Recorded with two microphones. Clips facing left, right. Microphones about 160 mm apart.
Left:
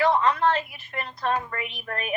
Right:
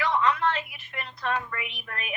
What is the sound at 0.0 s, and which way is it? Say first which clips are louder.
A woman's voice: left 4 dB; 40° left (ahead or behind).